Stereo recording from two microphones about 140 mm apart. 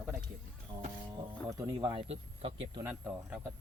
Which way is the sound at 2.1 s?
45° right (ahead or behind).